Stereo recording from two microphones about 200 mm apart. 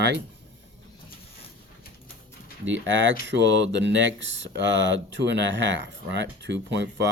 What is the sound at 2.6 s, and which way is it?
Speech, 70° right (ahead or behind).